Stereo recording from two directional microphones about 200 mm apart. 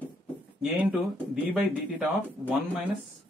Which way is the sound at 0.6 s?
5° right (ahead or behind).